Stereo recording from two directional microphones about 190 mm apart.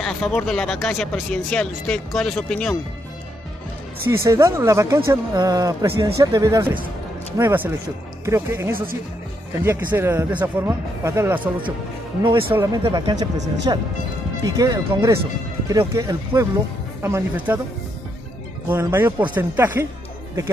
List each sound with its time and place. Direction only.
0.0 s speech: 5° left (ahead or behind)
4.1 s speech: 15° right (ahead or behind)
9.9 s speech: 10° right (ahead or behind)
18.7 s speech: 10° right (ahead or behind)